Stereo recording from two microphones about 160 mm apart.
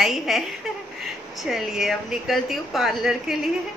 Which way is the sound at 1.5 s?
Centre (ahead or behind).